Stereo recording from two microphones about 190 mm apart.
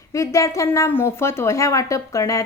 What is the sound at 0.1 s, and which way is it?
A woman's voice, 15° left (ahead or behind).